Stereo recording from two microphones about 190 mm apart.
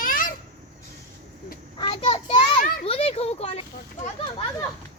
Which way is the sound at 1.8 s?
30° left (ahead or behind).